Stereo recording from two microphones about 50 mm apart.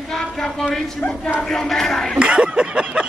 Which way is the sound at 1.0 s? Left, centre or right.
Left.